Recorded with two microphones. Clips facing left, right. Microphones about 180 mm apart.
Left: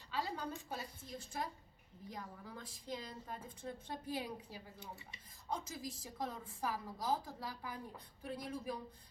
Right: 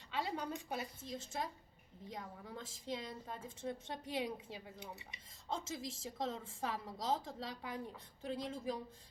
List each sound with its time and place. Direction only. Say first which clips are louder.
0.1 s a woman's voice: right 1 dB; 20° right (ahead or behind)